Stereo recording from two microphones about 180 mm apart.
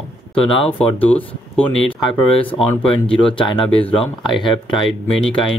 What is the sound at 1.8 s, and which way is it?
Speech, 30° left (ahead or behind).